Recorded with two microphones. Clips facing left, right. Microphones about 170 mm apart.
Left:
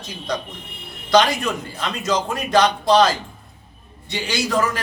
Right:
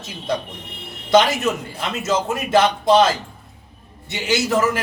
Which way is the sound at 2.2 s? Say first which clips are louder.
Right 1 dB; 25° right (ahead or behind).